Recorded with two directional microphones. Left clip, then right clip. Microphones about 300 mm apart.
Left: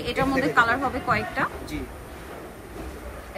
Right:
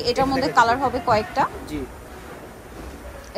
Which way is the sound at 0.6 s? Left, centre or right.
Centre.